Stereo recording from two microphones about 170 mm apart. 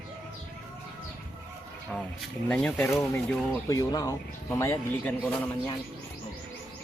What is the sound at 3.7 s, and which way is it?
Speech, 20° left (ahead or behind).